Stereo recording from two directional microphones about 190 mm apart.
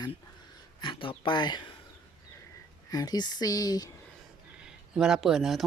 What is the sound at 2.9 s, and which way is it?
Speech, 20° left (ahead or behind).